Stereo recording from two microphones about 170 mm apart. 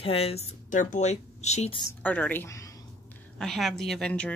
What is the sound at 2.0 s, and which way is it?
Speech, 10° left (ahead or behind).